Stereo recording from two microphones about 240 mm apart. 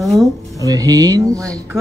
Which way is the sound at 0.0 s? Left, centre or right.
Centre.